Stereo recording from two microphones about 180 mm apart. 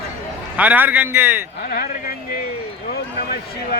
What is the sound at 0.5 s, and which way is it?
Speech, 10° right (ahead or behind).